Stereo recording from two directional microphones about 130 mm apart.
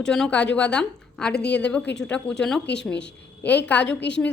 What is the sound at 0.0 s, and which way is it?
A woman's voice, 5° left (ahead or behind).